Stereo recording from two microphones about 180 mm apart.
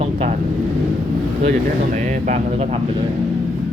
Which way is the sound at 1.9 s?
45° right (ahead or behind).